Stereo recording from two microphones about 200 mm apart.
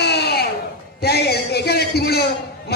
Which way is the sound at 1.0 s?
55° left (ahead or behind).